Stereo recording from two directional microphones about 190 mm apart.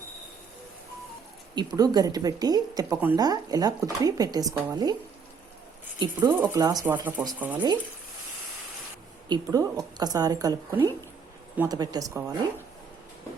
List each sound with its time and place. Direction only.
1.5 s a woman's voice: 20° right (ahead or behind)
6.0 s a woman's voice: 20° right (ahead or behind)
9.3 s a woman's voice: 20° right (ahead or behind)